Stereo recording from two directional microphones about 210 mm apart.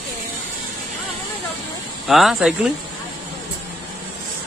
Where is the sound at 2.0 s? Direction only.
Centre (ahead or behind).